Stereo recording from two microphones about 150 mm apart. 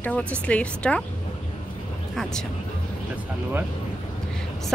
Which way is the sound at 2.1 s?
5° left (ahead or behind).